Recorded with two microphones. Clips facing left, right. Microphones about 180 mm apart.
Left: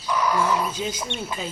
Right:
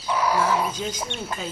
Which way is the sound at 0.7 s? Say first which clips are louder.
Left 1 dB; 10° left (ahead or behind).